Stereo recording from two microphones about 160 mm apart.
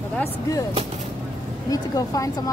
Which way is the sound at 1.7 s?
20° left (ahead or behind).